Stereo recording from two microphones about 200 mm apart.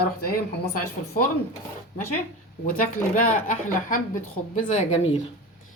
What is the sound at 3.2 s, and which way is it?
A woman's voice, 40° left (ahead or behind).